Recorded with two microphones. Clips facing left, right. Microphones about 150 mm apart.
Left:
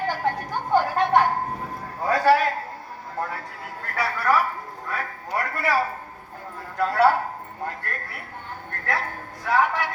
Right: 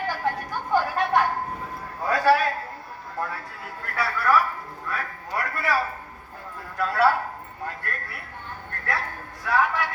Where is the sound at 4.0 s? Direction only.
25° left (ahead or behind).